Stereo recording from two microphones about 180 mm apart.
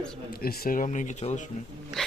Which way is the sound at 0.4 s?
50° left (ahead or behind).